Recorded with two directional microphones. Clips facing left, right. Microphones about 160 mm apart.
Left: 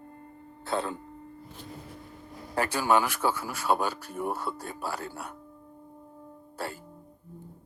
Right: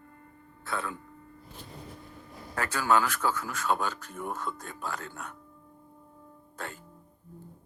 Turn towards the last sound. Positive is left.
turn(degrees=10)  # may be behind; listen again after turning